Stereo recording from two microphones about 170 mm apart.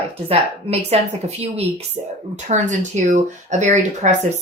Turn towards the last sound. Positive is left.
turn(degrees=-45)  # may be behind; listen again after turning